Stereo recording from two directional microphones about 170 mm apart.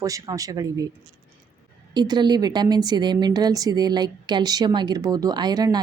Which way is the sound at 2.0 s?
25° right (ahead or behind).